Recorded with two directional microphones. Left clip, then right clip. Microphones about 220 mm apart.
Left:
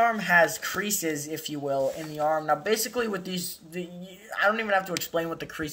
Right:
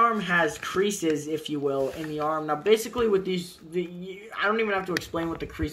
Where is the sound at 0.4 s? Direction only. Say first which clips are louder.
Left 1 dB; 45° left (ahead or behind).